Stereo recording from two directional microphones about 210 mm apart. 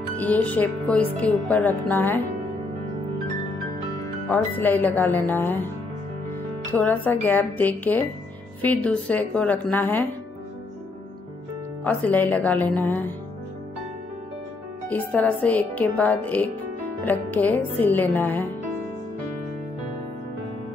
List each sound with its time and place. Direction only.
0.2 s speech: 5° left (ahead or behind)
4.3 s speech: 10° left (ahead or behind)
6.7 s speech: 10° left (ahead or behind)
11.8 s speech: 5° left (ahead or behind)
14.9 s speech: 5° left (ahead or behind)